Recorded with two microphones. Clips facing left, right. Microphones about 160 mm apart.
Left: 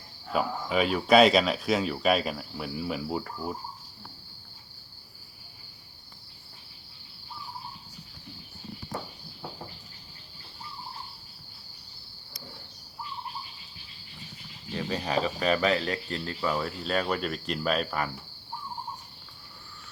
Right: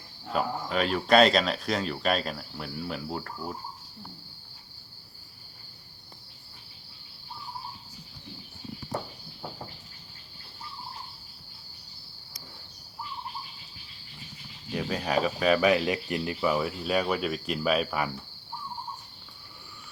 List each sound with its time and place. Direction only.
0.3 s speech: 5° left (ahead or behind)
14.7 s cricket: 5° right (ahead or behind)
15.6 s speech: 15° right (ahead or behind)